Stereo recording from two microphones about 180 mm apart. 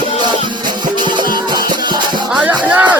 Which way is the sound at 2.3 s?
10° right (ahead or behind).